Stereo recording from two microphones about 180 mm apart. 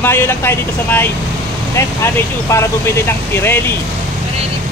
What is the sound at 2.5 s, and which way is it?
Speech, 15° left (ahead or behind).